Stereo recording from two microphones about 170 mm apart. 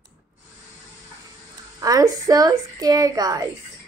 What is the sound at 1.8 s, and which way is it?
A woman's voice, 20° right (ahead or behind).